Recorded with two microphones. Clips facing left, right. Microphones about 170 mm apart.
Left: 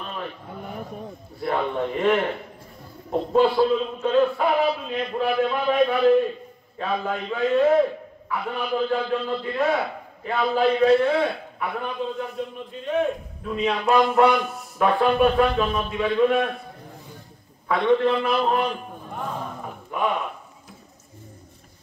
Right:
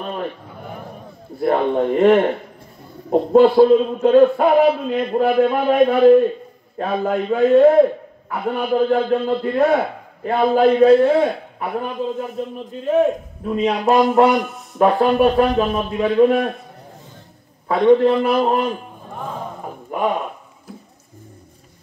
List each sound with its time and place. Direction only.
1.4 s a man's voice: 50° right (ahead or behind)
10.9 s a man's voice: 35° right (ahead or behind)
17.6 s a man's voice: 40° right (ahead or behind)
19.9 s a sound: 40° right (ahead or behind)